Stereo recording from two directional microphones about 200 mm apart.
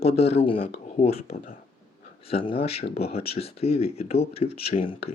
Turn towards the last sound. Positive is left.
turn(degrees=30)  # may be behind; listen again after turning